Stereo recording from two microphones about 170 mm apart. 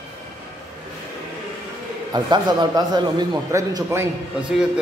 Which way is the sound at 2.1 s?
25° right (ahead or behind).